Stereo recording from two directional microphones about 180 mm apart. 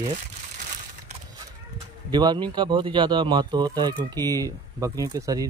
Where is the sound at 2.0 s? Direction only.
25° right (ahead or behind).